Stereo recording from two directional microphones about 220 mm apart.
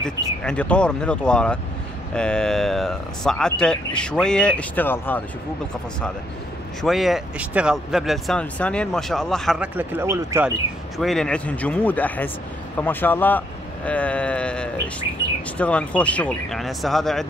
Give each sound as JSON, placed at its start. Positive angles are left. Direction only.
{"t": 0.0, "sound": "speech", "side_deg": 5}
{"t": 6.8, "sound": "speech", "side_deg": 0}
{"t": 11.0, "sound": "speech", "side_deg": 0}